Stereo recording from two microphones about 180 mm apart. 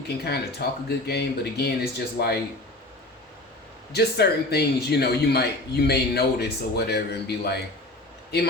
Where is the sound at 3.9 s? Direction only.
65° left (ahead or behind).